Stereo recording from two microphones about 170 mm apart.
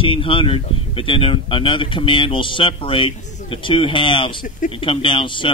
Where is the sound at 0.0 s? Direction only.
30° left (ahead or behind).